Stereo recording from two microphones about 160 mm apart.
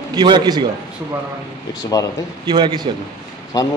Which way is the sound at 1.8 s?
25° left (ahead or behind).